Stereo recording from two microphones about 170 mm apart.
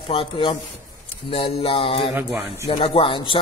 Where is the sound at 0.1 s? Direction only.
30° left (ahead or behind).